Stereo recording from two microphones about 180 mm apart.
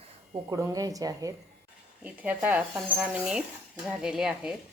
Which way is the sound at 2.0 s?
10° right (ahead or behind).